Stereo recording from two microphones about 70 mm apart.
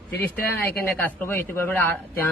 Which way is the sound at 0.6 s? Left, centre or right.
Left.